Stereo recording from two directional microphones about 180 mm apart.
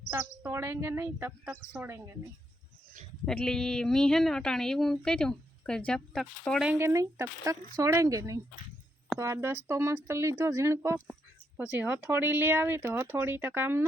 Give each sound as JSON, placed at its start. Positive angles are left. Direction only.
{"t": 0.1, "sound": "speech", "side_deg": -15}
{"t": 3.2, "sound": "speech", "side_deg": 5}
{"t": 6.7, "sound": "speech", "side_deg": -15}